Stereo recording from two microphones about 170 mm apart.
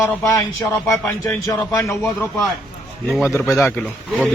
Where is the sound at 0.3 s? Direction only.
15° left (ahead or behind).